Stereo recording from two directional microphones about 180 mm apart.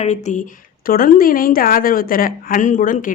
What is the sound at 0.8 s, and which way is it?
A woman's voice, 50° left (ahead or behind).